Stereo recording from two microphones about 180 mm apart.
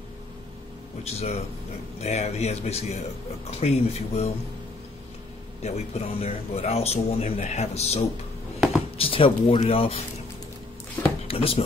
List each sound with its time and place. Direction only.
1.0 s speech: 35° left (ahead or behind)
5.6 s speech: 35° left (ahead or behind)
11.2 s speech: 30° left (ahead or behind)